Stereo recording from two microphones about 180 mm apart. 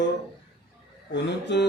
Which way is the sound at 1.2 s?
70° left (ahead or behind).